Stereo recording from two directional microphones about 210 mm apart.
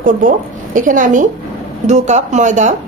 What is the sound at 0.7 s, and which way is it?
Speech, 40° right (ahead or behind).